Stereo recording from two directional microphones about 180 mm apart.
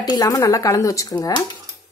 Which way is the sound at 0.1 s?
20° left (ahead or behind).